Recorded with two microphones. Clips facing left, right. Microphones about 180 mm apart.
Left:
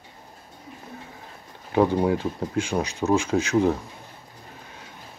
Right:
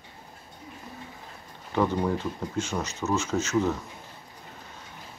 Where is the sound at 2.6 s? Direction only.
10° left (ahead or behind).